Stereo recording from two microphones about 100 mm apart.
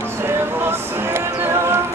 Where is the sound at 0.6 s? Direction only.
25° right (ahead or behind).